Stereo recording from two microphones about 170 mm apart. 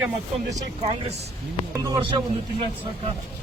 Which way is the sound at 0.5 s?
35° right (ahead or behind).